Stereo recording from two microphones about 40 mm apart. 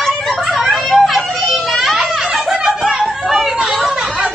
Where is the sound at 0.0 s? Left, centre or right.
Centre.